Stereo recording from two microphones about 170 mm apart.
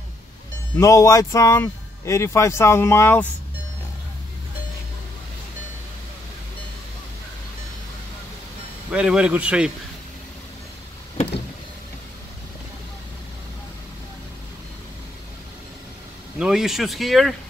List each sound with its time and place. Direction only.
0.7 s a man's voice: 20° left (ahead or behind)
8.9 s speech: 5° right (ahead or behind)
16.3 s speech: 5° right (ahead or behind)